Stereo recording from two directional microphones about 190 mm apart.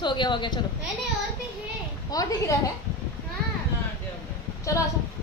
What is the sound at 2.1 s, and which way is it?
Speech, 20° left (ahead or behind).